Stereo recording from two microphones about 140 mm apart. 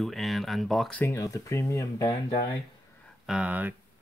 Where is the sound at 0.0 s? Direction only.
Centre (ahead or behind).